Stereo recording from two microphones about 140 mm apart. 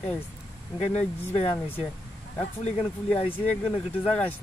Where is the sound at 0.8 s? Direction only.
50° left (ahead or behind).